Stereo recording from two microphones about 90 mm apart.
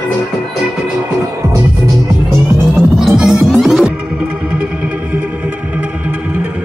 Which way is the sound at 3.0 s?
5° right (ahead or behind).